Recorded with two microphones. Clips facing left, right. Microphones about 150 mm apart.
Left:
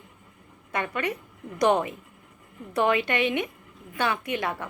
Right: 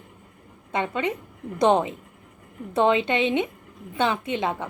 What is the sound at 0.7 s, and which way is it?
A woman's voice, 20° right (ahead or behind).